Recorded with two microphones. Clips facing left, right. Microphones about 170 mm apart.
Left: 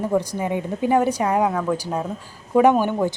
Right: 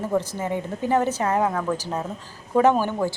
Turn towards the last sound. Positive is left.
turn(degrees=15)  # may be behind; listen again after turning